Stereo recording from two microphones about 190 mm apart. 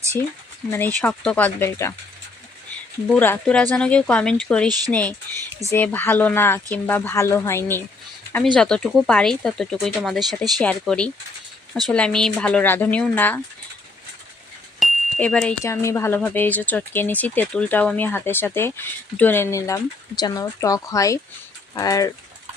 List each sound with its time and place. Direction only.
0.7 s speech: 10° left (ahead or behind)
3.2 s speech: 5° left (ahead or behind)
14.8 s a sound: 5° left (ahead or behind)
15.6 s speech: 15° left (ahead or behind)